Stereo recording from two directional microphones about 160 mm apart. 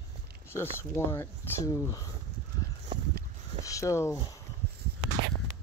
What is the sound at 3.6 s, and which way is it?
Speech, 20° left (ahead or behind).